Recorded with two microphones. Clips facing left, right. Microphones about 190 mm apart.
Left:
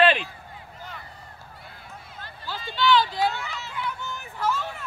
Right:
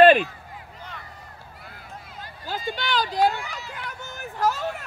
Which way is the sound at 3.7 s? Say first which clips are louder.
Left 4 dB; 45° right (ahead or behind).